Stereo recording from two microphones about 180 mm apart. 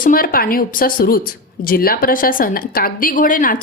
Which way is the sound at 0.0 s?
55° left (ahead or behind).